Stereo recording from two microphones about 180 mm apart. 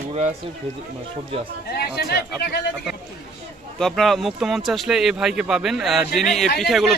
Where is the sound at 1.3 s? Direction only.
35° right (ahead or behind).